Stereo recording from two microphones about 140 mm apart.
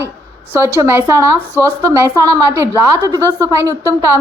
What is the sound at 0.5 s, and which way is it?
A woman's voice, 20° right (ahead or behind).